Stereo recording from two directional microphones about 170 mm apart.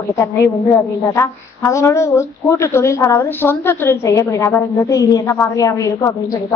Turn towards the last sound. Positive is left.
turn(degrees=20)  # may be behind; listen again after turning